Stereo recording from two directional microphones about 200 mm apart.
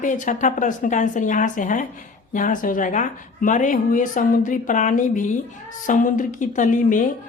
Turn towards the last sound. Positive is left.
turn(degrees=40)  # may be behind; listen again after turning